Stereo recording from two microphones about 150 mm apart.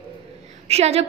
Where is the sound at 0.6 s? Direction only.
45° right (ahead or behind).